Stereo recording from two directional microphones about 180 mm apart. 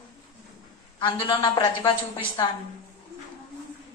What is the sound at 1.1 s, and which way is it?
A woman's voice, 25° left (ahead or behind).